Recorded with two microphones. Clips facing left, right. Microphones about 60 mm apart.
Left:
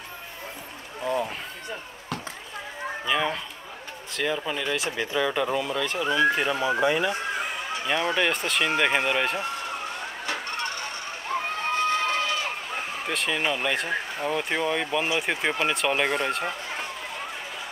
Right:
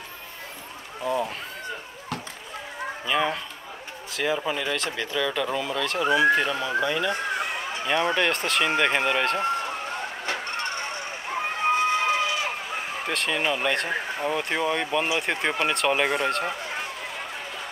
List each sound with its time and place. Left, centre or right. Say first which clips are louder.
1.0 s a sound: right 1 dB; centre
3.1 s speech: right 1 dB; centre
5.0 s speech: left 2 dB; centre
5.6 s speech: even; centre
5.9 s speech: right 3 dB; centre
6.4 s speech: left 2 dB; centre
7.3 s a sound: right 1 dB; centre
8.2 s speech: right 1 dB; centre
11.3 s a sound: left 1 dB; right
11.6 s speech: right 4 dB; centre